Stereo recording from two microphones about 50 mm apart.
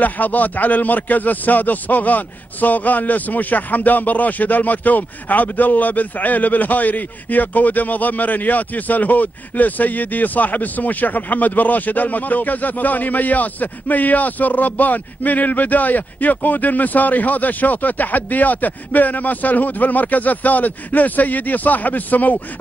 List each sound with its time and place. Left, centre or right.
0.0 s a man's voice: left